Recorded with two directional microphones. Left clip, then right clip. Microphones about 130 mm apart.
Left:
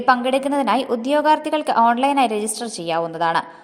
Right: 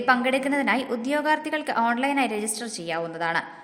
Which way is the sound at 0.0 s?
30° left (ahead or behind).